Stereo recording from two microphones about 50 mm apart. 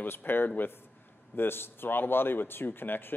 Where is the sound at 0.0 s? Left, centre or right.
Left.